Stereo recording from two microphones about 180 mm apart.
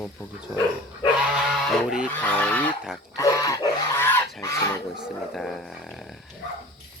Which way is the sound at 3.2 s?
20° left (ahead or behind).